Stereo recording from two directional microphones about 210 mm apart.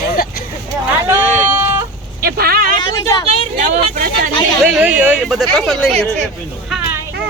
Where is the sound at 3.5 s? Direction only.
40° right (ahead or behind).